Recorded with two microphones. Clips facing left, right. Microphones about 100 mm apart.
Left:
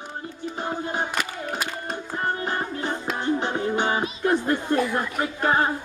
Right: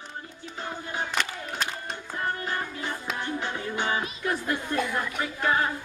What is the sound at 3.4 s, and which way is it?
Music, 30° left (ahead or behind).